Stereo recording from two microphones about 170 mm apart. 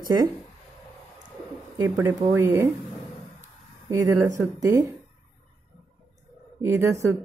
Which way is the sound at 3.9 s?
20° right (ahead or behind).